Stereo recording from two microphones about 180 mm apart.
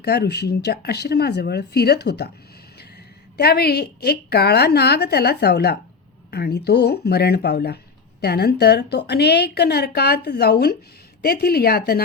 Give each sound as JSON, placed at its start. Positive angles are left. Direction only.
{"t": 0.0, "sound": "a woman's voice", "side_deg": 65}
{"t": 3.3, "sound": "a woman's voice", "side_deg": 60}